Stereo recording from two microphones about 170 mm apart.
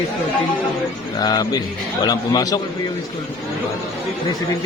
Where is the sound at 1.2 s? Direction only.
25° left (ahead or behind).